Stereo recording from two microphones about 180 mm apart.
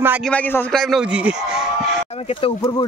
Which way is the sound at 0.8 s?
Centre (ahead or behind).